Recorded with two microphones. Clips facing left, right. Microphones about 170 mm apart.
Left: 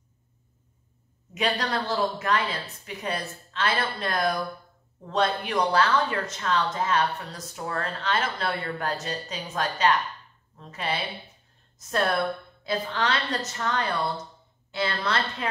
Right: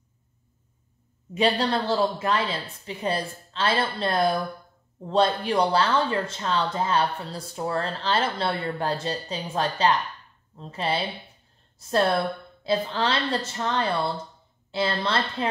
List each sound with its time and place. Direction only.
1.3 s speech: 30° right (ahead or behind)
12.6 s speech: 30° right (ahead or behind)